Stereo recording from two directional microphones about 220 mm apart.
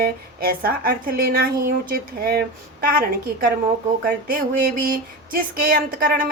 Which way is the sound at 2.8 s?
40° right (ahead or behind).